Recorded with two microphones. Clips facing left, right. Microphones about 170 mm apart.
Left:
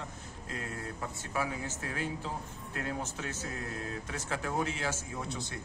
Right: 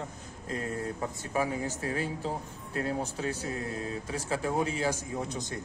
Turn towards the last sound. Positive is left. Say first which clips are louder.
# right 3 dB
turn(degrees=-20)  # may be behind; listen again after turning